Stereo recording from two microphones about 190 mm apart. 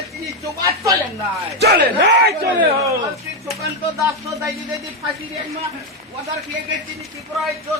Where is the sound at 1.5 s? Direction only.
65° right (ahead or behind).